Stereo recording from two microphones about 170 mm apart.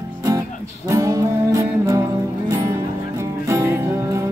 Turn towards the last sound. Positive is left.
turn(degrees=-15)  # may be behind; listen again after turning